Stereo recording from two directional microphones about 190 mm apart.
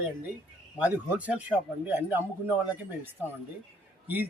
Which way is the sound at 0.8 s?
5° right (ahead or behind).